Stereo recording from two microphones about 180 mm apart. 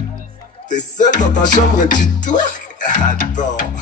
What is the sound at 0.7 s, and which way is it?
Music, 45° left (ahead or behind).